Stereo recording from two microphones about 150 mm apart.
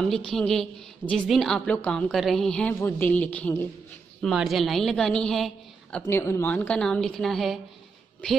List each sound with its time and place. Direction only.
0.3 s a woman's voice: 5° left (ahead or behind)
4.2 s a woman's voice: centre (ahead or behind)